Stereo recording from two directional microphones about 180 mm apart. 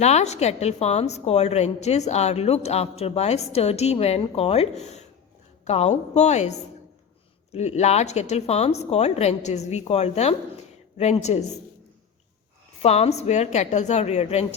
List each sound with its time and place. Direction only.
0.0 s a woman's voice: 40° left (ahead or behind)
12.8 s a woman's voice: 35° left (ahead or behind)